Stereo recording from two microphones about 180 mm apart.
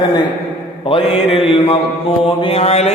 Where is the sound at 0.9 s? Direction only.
30° left (ahead or behind).